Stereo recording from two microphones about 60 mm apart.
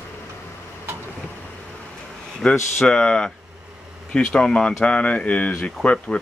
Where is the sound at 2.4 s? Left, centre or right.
Centre.